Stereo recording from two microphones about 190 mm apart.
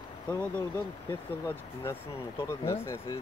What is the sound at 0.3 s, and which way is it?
Speech, 10° left (ahead or behind).